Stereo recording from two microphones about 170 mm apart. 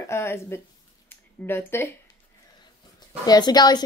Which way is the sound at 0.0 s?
15° left (ahead or behind).